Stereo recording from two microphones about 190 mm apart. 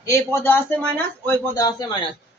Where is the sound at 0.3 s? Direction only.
10° left (ahead or behind).